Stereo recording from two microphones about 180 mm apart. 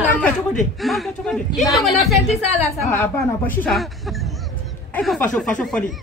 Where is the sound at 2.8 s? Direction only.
10° left (ahead or behind).